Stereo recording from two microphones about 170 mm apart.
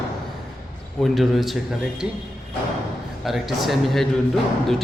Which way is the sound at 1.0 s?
Centre (ahead or behind).